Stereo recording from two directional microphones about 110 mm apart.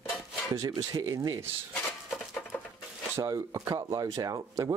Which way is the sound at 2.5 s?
20° left (ahead or behind).